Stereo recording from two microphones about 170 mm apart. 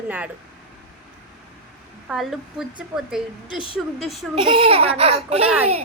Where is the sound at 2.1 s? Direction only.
5° right (ahead or behind).